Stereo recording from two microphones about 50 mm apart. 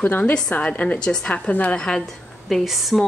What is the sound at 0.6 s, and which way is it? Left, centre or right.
Speech, left.